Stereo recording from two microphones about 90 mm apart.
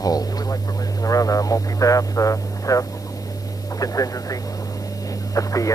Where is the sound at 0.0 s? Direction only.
45° left (ahead or behind).